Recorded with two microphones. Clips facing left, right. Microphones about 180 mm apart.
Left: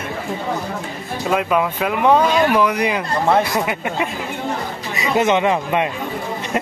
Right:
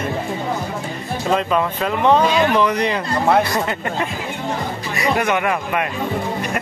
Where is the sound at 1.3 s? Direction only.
10° left (ahead or behind).